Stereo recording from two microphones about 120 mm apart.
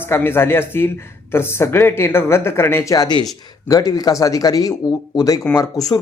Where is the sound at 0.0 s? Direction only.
20° left (ahead or behind).